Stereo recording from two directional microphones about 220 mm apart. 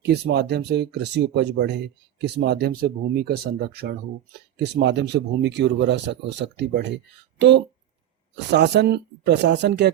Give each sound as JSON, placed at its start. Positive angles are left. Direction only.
{"t": 0.0, "sound": "speech", "side_deg": -50}